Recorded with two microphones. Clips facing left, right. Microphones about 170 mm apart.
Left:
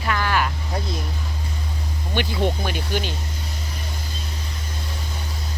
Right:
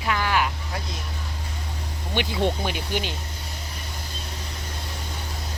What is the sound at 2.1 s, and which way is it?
Speech, 15° right (ahead or behind).